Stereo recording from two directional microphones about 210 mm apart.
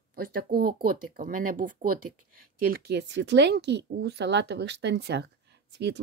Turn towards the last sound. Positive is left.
turn(degrees=-55)  # may be behind; listen again after turning